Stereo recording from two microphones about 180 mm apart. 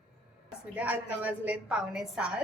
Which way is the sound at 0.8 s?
10° right (ahead or behind).